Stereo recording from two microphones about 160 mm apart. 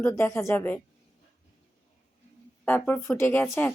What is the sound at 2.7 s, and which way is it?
Speech, 10° left (ahead or behind).